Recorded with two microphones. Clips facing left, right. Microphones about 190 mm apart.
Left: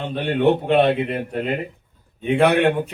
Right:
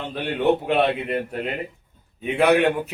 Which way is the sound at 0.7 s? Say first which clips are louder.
Left 4 dB; centre (ahead or behind).